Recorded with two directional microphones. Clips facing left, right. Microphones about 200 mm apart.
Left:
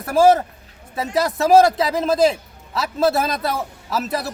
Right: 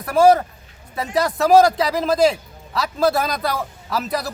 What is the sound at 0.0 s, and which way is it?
A man's voice, centre (ahead or behind).